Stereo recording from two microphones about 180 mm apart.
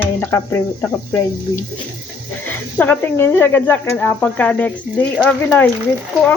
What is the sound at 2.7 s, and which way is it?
Speech, 10° left (ahead or behind).